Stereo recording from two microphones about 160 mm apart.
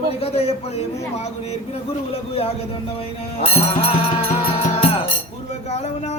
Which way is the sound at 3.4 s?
40° left (ahead or behind).